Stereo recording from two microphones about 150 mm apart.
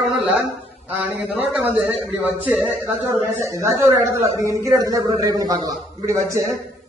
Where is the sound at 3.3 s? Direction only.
20° right (ahead or behind).